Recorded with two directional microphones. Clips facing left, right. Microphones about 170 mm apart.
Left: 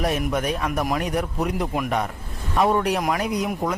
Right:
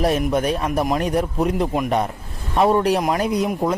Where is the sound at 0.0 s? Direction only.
30° right (ahead or behind).